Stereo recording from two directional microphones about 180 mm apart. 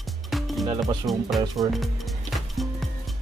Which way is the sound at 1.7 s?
Centre (ahead or behind).